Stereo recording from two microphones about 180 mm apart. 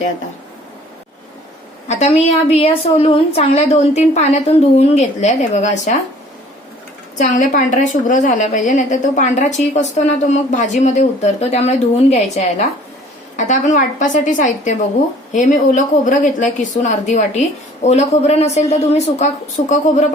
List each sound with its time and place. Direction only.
1.9 s a woman's voice: 40° left (ahead or behind)
7.2 s a woman's voice: 45° left (ahead or behind)